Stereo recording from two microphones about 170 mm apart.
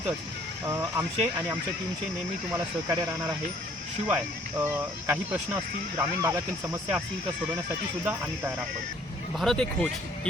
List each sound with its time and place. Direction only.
0.6 s speech: 15° right (ahead or behind)
8.0 s speech: 10° right (ahead or behind)
9.4 s speech: 5° left (ahead or behind)